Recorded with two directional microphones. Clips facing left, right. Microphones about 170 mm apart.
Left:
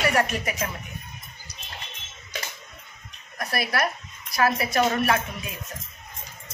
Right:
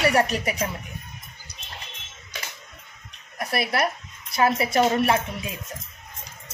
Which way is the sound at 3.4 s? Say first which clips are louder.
Right 2 dB; 25° right (ahead or behind).